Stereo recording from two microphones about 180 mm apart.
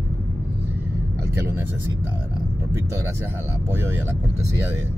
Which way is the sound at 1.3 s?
10° right (ahead or behind).